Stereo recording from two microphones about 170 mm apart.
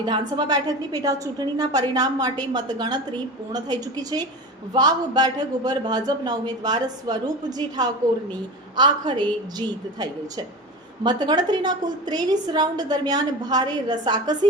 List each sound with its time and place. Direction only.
0.0 s a woman's voice: 25° right (ahead or behind)